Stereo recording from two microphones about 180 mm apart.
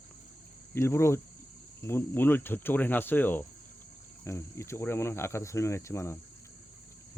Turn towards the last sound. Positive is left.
turn(degrees=15)  # may be behind; listen again after turning